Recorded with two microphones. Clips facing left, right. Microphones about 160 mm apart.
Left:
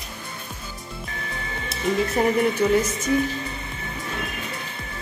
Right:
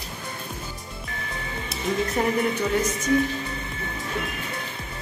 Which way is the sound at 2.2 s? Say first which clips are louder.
Left 3 dB; 10° left (ahead or behind).